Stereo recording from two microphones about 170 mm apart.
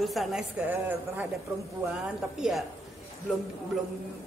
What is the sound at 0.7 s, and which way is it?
Speech, 10° right (ahead or behind).